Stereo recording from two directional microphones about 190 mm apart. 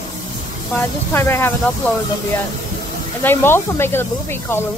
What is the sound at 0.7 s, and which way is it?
Speech, 10° left (ahead or behind).